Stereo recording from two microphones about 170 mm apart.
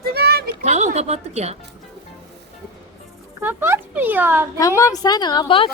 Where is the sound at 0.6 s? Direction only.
45° right (ahead or behind).